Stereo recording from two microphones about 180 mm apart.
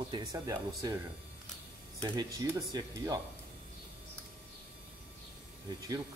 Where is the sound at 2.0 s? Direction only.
20° right (ahead or behind).